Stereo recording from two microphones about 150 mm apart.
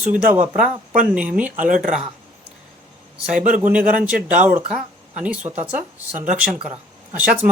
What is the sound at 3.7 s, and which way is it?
Speech, 10° right (ahead or behind).